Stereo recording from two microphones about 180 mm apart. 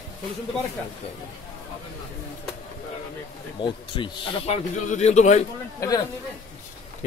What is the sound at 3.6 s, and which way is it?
Speech, 25° left (ahead or behind).